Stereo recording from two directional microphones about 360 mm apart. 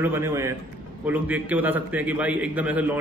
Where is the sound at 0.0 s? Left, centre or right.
Centre.